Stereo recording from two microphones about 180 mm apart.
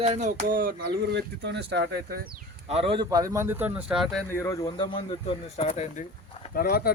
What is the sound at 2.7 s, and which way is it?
Speech, 30° right (ahead or behind).